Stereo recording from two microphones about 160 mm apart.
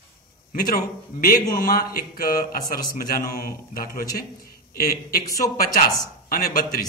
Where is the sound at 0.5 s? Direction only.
65° left (ahead or behind).